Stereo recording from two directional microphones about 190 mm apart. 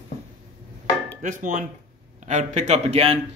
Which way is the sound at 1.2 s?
45° right (ahead or behind).